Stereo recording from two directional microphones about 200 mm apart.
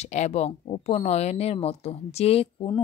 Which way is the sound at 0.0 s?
35° left (ahead or behind).